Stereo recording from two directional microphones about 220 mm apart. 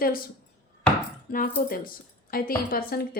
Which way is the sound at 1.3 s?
40° left (ahead or behind).